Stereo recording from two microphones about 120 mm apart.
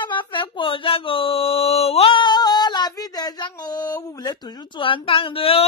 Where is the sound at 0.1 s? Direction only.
45° left (ahead or behind).